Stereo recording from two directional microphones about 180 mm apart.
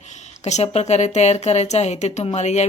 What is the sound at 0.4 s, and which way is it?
Speech, 35° left (ahead or behind).